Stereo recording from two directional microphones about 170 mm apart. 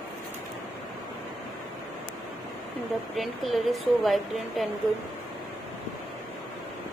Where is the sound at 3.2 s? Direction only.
Centre (ahead or behind).